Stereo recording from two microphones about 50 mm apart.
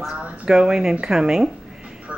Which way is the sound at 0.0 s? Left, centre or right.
Centre.